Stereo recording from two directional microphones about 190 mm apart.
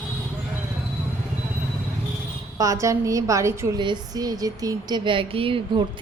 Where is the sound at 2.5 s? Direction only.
15° right (ahead or behind).